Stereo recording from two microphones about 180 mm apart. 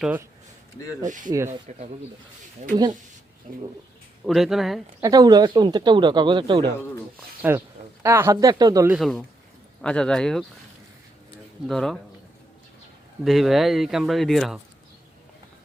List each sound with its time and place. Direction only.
0.0 s speech: 10° right (ahead or behind)
1.0 s speech: 45° right (ahead or behind)
4.3 s speech: centre (ahead or behind)
5.0 s speech: 20° right (ahead or behind)
7.4 s speech: 10° right (ahead or behind)
8.9 s speech: centre (ahead or behind)
11.6 s speech: centre (ahead or behind)
13.2 s speech: centre (ahead or behind)